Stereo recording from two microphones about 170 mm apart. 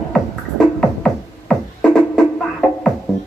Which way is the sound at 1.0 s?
5° left (ahead or behind).